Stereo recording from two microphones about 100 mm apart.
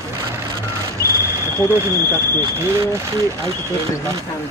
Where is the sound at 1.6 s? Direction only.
25° right (ahead or behind).